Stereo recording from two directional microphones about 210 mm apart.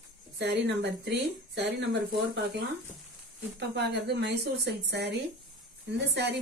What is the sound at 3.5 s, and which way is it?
A woman's voice, 55° right (ahead or behind).